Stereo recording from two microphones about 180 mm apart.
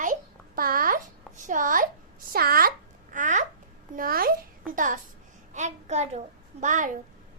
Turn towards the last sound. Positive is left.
turn(degrees=-45)  # may be behind; listen again after turning